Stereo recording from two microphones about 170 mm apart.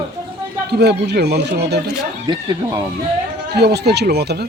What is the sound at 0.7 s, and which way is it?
Speech, 75° right (ahead or behind).